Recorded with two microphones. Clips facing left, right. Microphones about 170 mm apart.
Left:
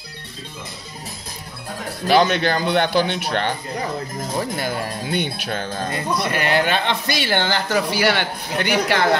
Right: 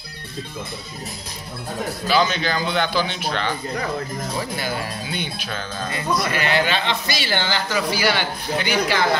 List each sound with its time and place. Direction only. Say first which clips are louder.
2.0 s speech: left 4 dB; 60° left (ahead or behind)